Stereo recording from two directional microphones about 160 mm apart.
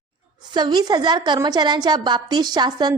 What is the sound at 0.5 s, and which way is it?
Speech, 25° right (ahead or behind).